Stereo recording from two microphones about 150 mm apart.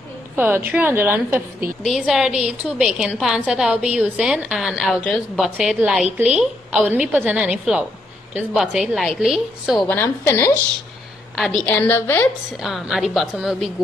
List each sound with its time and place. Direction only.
0.4 s a woman's voice: 10° right (ahead or behind)
1.8 s a woman's voice: centre (ahead or behind)
9.8 s a woman's voice: 15° left (ahead or behind)
11.3 s a woman's voice: centre (ahead or behind)
11.6 s a woman's voice: 10° left (ahead or behind)
12.5 s a woman's voice: centre (ahead or behind)